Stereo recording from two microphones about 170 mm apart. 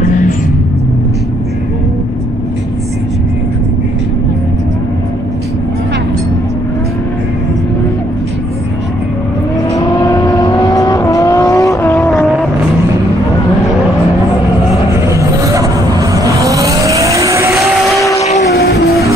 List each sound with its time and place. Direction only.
0.0 s vehicle: 50° left (ahead or behind)
10.0 s vehicle: 20° left (ahead or behind)
12.1 s vehicle: 5° left (ahead or behind)
15.1 s vehicle: 20° right (ahead or behind)
17.8 s vehicle: centre (ahead or behind)
18.4 s vehicle: 80° left